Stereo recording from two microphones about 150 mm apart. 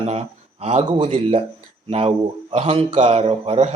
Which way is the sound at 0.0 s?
45° right (ahead or behind).